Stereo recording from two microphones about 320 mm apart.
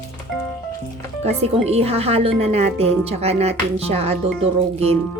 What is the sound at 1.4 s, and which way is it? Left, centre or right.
A woman's voice, centre.